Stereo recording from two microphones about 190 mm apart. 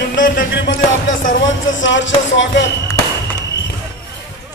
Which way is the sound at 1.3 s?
80° left.